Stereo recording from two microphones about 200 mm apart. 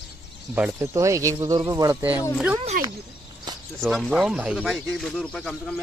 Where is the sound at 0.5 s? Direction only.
10° right (ahead or behind).